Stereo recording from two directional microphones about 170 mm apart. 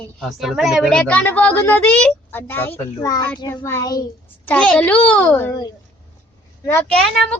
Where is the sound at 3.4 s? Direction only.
15° left (ahead or behind).